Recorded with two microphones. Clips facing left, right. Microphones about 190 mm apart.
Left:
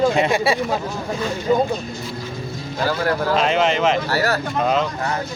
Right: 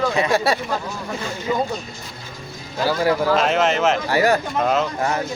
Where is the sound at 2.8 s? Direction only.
10° right (ahead or behind).